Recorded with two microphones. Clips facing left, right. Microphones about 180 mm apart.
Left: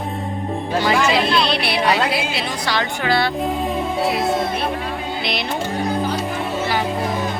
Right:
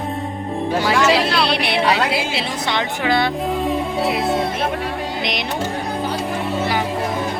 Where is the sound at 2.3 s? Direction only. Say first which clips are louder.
Right 1 dB; 25° right (ahead or behind).